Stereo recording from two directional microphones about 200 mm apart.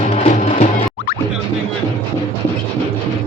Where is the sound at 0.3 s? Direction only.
45° left (ahead or behind).